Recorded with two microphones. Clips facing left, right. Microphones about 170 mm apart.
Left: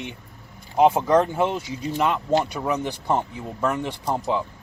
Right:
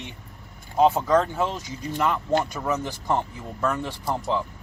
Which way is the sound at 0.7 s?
15° left (ahead or behind).